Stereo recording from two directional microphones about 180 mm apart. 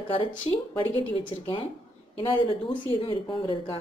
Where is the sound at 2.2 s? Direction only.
30° left (ahead or behind).